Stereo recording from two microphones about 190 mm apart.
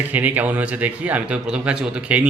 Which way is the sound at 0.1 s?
10° right (ahead or behind).